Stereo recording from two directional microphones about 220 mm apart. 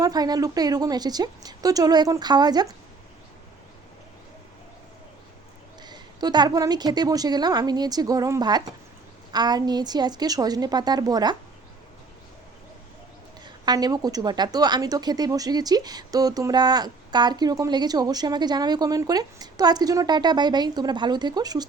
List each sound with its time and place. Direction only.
0.0 s a woman's voice: 15° right (ahead or behind)
5.8 s a woman's voice: 20° right (ahead or behind)
13.4 s a woman's voice: 20° right (ahead or behind)